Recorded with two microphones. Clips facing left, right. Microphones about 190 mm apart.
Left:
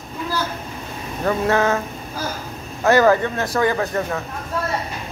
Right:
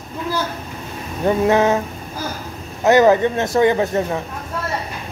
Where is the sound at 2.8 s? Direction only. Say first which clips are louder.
Right 3 dB; 20° right (ahead or behind).